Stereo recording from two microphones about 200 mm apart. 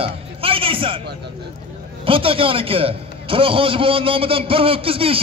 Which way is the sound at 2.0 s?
25° right (ahead or behind).